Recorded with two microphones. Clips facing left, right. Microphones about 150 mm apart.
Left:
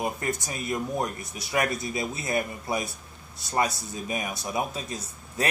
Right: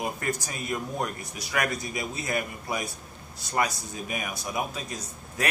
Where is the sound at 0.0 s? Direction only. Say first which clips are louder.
Left 1 dB; 25° left (ahead or behind).